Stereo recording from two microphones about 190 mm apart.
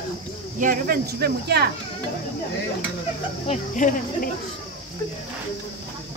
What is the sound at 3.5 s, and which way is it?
Speech, 40° left (ahead or behind).